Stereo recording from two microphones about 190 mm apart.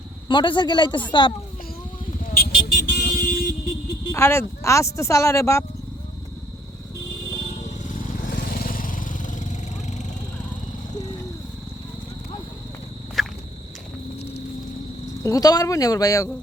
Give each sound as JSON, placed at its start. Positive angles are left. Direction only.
{"t": 0.3, "sound": "speech", "side_deg": 25}
{"t": 2.2, "sound": "vehicle", "side_deg": 50}
{"t": 4.1, "sound": "speech", "side_deg": 15}
{"t": 7.5, "sound": "vehicle", "side_deg": 45}
{"t": 13.2, "sound": "walk", "side_deg": 0}
{"t": 15.2, "sound": "speech", "side_deg": 20}